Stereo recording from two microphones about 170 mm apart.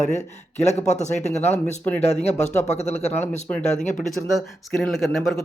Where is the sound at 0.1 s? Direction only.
40° left (ahead or behind).